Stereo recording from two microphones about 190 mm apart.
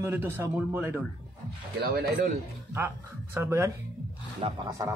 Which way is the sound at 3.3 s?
10° right (ahead or behind).